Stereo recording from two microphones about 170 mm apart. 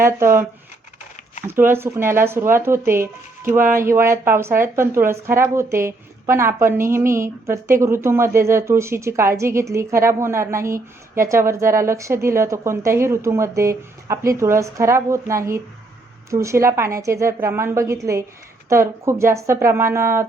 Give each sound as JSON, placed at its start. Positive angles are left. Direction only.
{"t": 0.0, "sound": "a woman's voice", "side_deg": -15}
{"t": 1.5, "sound": "a woman's voice", "side_deg": -15}